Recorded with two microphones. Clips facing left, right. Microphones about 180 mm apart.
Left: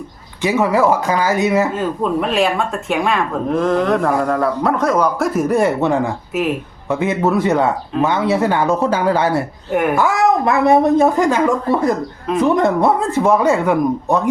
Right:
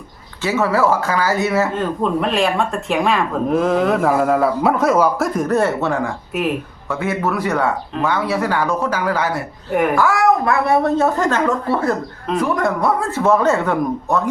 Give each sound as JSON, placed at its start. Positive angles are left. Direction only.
{"t": 0.4, "sound": "a woman's voice", "side_deg": 15}
{"t": 1.7, "sound": "a woman's voice", "side_deg": 5}